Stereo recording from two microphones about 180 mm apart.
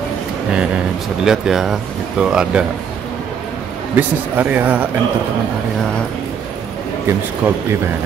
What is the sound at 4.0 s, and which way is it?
Speech, 10° right (ahead or behind).